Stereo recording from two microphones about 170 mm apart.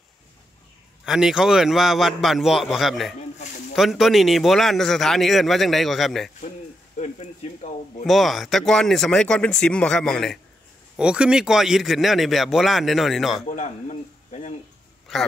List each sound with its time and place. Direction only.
1.0 s a man's voice: 5° right (ahead or behind)
3.2 s a sound: 45° left (ahead or behind)
3.7 s a man's voice: centre (ahead or behind)
7.0 s a sound: 40° left (ahead or behind)
8.0 s a man's voice: centre (ahead or behind)
13.5 s dishes: 45° left (ahead or behind)